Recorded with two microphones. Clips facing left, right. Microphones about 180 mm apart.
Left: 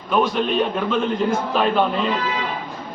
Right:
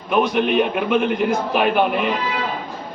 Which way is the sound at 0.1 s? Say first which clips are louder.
Right 2 dB; 15° right (ahead or behind).